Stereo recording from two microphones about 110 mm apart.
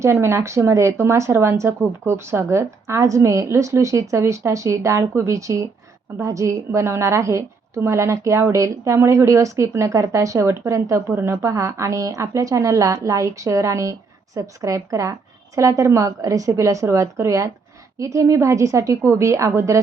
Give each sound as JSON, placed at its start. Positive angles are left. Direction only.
{"t": 0.0, "sound": "a woman's voice", "side_deg": -25}